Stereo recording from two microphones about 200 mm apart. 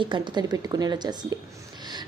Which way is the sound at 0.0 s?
20° right (ahead or behind).